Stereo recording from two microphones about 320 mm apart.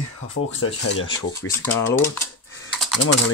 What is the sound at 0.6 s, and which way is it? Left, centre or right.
Speech, left.